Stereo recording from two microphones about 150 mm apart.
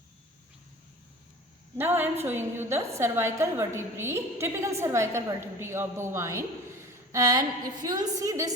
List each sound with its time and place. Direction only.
1.8 s a woman's voice: 15° right (ahead or behind)